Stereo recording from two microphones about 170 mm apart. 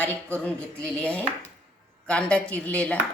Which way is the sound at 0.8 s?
5° left (ahead or behind).